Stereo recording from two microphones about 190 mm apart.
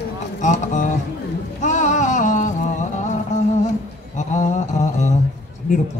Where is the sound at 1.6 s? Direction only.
40° left (ahead or behind).